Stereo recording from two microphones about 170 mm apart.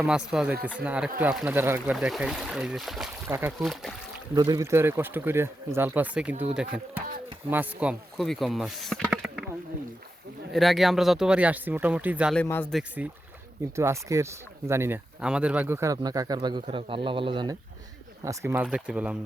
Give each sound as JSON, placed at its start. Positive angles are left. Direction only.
{"t": 0.0, "sound": "speech", "side_deg": -5}
{"t": 3.2, "sound": "speech", "side_deg": -15}
{"t": 3.6, "sound": "speech", "side_deg": 0}
{"t": 4.4, "sound": "speech", "side_deg": -20}
{"t": 9.0, "sound": "a sound", "side_deg": -5}
{"t": 10.5, "sound": "speech", "side_deg": 0}
{"t": 12.4, "sound": "speech", "side_deg": 10}
{"t": 13.0, "sound": "speech", "side_deg": -5}
{"t": 13.7, "sound": "speech", "side_deg": -15}
{"t": 18.3, "sound": "speech", "side_deg": -15}